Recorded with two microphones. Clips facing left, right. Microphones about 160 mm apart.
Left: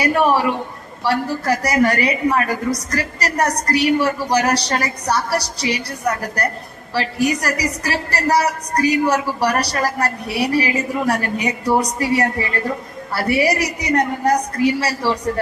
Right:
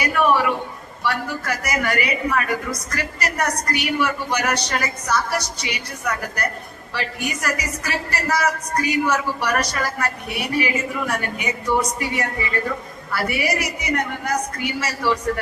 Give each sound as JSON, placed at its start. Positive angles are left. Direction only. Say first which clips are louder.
{"t": 0.0, "sound": "a woman's voice", "louder": "left 3 dB", "side_deg": 35}